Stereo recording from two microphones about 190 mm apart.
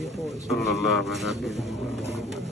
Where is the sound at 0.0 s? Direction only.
Centre (ahead or behind).